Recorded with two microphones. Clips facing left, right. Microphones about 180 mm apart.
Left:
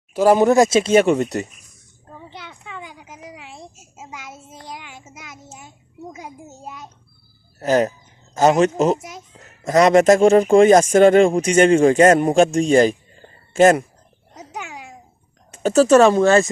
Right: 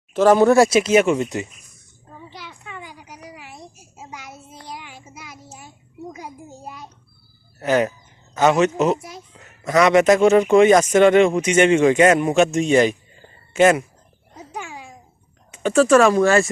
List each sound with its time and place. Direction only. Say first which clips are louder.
0.1 s speech: even; 10° left (ahead or behind); by 1.1 s 30° left (ahead or behind)
1.1 s a man's voice: left 2 dB; 40° left (ahead or behind)
2.3 s a sound: left 1 dB; 20° left (ahead or behind)
4.6 s child singing: even; 20° left (ahead or behind)
6.1 s a sound: even; 20° left (ahead or behind)
7.6 s a man's voice: left 1 dB; 40° left (ahead or behind); by 9.2 s 20° left (ahead or behind)
9.4 s a man's voice: left 2 dB; 35° left (ahead or behind)
14.5 s babbling: even; 20° left (ahead or behind)
15.8 s speech: left 2 dB; 25° left (ahead or behind)